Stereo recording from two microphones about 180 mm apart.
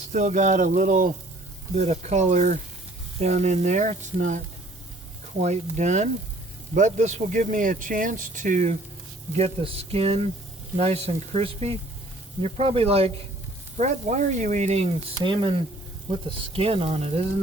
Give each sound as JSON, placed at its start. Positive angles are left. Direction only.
{"t": 0.1, "sound": "speech", "side_deg": -40}